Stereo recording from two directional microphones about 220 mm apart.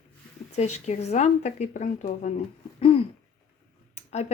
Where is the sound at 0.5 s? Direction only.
30° left (ahead or behind).